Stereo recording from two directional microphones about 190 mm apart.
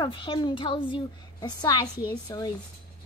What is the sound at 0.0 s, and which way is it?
A woman's voice, 25° left (ahead or behind).